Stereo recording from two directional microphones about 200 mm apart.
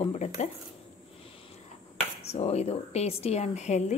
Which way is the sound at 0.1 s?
35° left (ahead or behind).